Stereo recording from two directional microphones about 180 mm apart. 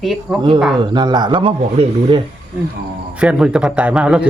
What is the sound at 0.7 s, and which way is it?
Speech, 25° right (ahead or behind).